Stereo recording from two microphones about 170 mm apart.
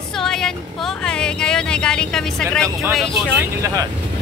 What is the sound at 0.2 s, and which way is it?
Music, 5° left (ahead or behind).